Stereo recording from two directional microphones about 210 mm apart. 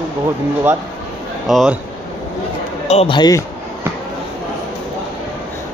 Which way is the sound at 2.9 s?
25° left (ahead or behind).